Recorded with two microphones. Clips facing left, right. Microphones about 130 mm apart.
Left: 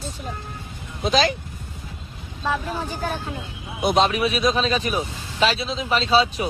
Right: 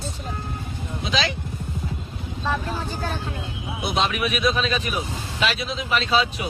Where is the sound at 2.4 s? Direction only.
10° left (ahead or behind).